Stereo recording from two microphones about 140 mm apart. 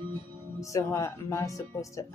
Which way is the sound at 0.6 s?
20° left (ahead or behind).